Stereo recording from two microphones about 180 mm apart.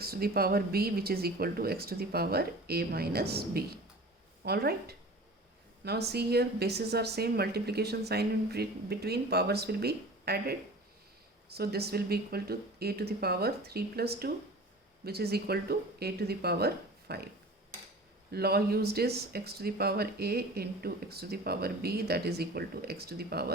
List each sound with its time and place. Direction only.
0.0 s speech: 55° right (ahead or behind)
18.3 s speech: 60° right (ahead or behind)